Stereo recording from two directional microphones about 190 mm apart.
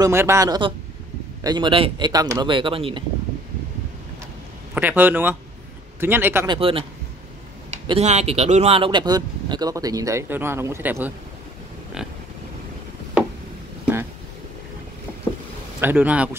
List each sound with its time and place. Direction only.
0.0 s speech: 15° right (ahead or behind)
4.7 s a man's voice: 10° right (ahead or behind)
6.4 s speech: 25° right (ahead or behind)
7.8 s speech: 30° right (ahead or behind); by 11.1 s 10° right (ahead or behind)
15.8 s a man's voice: 10° right (ahead or behind)